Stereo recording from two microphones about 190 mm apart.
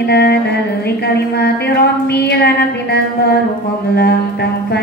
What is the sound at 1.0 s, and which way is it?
Music, 60° left (ahead or behind).